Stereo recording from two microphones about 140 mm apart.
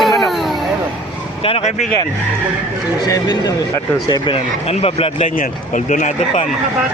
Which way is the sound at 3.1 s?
30° left (ahead or behind).